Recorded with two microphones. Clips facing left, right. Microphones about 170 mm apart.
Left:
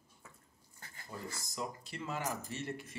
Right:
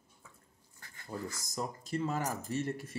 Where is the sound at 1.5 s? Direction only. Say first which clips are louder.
Right 7 dB; 45° right (ahead or behind).